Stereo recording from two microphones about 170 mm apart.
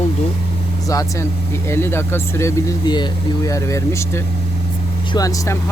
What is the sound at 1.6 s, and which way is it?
Speech, 15° left (ahead or behind).